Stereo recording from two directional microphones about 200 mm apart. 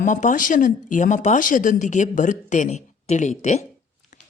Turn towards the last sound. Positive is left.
turn(degrees=35)  # may be behind; listen again after turning